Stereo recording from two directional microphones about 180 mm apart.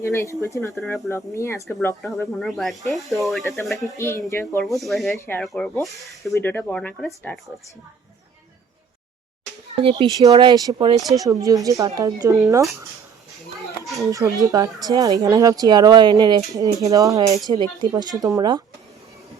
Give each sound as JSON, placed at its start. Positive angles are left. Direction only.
{"t": 0.0, "sound": "speech", "side_deg": 15}
{"t": 0.7, "sound": "speech", "side_deg": 0}
{"t": 1.1, "sound": "speech", "side_deg": 15}
{"t": 2.0, "sound": "speech", "side_deg": 0}
{"t": 3.9, "sound": "speech", "side_deg": 15}
{"t": 4.6, "sound": "speech", "side_deg": 0}
{"t": 5.1, "sound": "speech", "side_deg": 15}
{"t": 5.4, "sound": "speech", "side_deg": 5}
{"t": 9.8, "sound": "speech", "side_deg": -25}
{"t": 13.8, "sound": "a child's voice", "side_deg": 0}
{"t": 14.1, "sound": "speech", "side_deg": -20}